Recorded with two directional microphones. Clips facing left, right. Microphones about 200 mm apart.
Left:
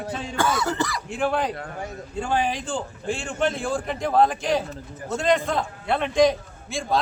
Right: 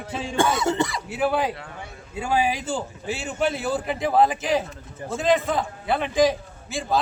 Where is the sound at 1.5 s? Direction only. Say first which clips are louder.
Left 5 dB; 40° left (ahead or behind).